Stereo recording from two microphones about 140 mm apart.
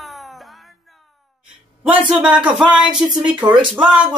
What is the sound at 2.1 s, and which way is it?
Speech, 5° right (ahead or behind).